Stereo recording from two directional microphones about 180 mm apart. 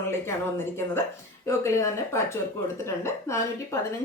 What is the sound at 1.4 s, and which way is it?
Speech, 15° left (ahead or behind).